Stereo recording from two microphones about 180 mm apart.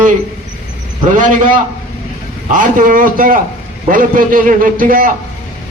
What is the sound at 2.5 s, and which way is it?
A man's voice, 50° right (ahead or behind).